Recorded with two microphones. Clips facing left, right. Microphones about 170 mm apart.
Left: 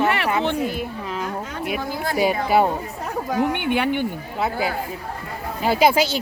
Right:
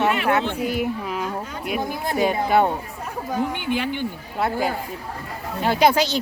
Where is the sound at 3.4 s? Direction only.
65° left (ahead or behind).